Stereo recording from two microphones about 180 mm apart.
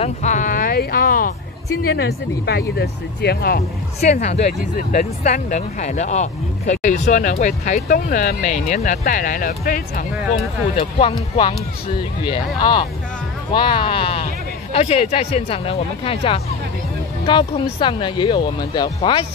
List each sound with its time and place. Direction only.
0.0 s a sound: 40° left (ahead or behind)
1.8 s speech: 60° left (ahead or behind)
4.0 s speech: 40° left (ahead or behind)
10.8 s speech: 30° left (ahead or behind)
17.7 s speech: 25° left (ahead or behind)